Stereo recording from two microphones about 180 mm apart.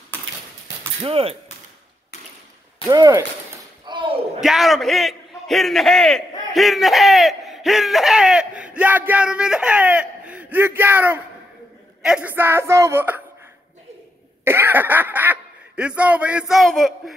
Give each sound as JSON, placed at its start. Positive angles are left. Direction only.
{"t": 1.0, "sound": "speech", "side_deg": -30}
{"t": 2.9, "sound": "a woman's voice", "side_deg": -15}
{"t": 3.8, "sound": "a sound", "side_deg": -25}
{"t": 4.4, "sound": "a man's voice", "side_deg": 0}
{"t": 14.4, "sound": "speech", "side_deg": -10}